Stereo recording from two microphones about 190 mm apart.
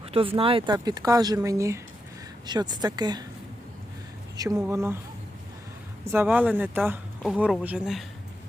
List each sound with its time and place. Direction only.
0.0 s speech: 30° right (ahead or behind)
4.4 s speech: 15° right (ahead or behind)
6.1 s speech: 10° right (ahead or behind)